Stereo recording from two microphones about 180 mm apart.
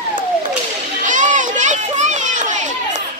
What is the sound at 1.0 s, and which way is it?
Children playing, 45° right (ahead or behind).